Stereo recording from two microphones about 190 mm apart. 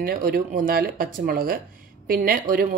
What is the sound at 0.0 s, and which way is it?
Speech, 50° right (ahead or behind).